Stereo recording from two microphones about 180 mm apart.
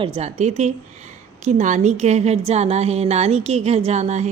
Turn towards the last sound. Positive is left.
turn(degrees=-40)  # may be behind; listen again after turning